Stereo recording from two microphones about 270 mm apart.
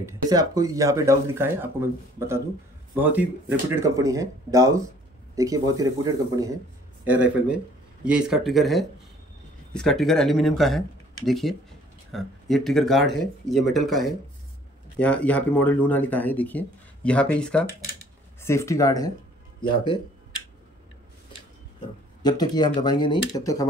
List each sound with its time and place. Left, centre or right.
0.0 s speech: centre
22.2 s speech: centre